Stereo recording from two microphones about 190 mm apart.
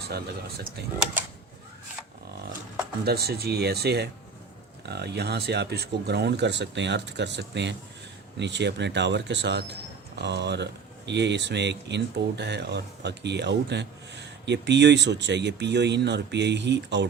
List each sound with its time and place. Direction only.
0.8 s speech: 60° right (ahead or behind)
3.0 s speech: 55° right (ahead or behind)